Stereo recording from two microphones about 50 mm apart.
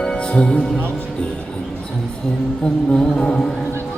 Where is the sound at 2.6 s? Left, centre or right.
Centre.